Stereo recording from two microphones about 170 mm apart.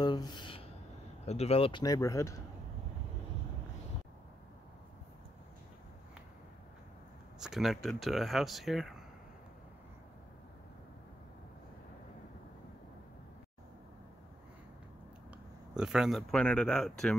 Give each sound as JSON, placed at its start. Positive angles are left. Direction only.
{"t": 0.0, "sound": "a sound", "side_deg": 25}
{"t": 1.2, "sound": "speech", "side_deg": 40}
{"t": 7.3, "sound": "speech", "side_deg": 0}
{"t": 15.7, "sound": "speech", "side_deg": -5}